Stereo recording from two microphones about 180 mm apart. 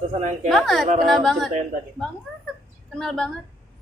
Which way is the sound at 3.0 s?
5° left (ahead or behind).